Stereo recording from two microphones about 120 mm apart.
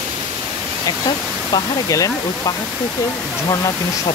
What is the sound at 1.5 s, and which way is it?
Speech, 30° left (ahead or behind).